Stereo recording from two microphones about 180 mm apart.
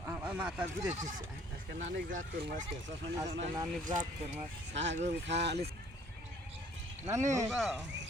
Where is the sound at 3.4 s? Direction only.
30° right (ahead or behind).